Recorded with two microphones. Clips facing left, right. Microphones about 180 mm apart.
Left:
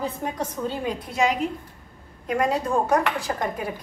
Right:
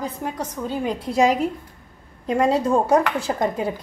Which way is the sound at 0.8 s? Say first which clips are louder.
Right 6 dB; 35° right (ahead or behind).